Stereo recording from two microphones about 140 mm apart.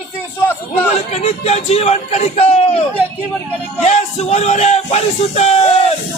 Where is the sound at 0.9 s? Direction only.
50° left (ahead or behind).